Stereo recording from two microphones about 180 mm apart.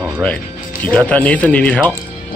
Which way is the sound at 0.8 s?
10° left (ahead or behind).